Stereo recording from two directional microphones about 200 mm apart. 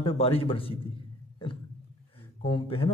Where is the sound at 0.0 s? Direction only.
30° left (ahead or behind).